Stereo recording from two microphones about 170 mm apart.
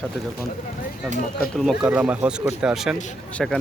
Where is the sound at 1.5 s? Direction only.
Centre (ahead or behind).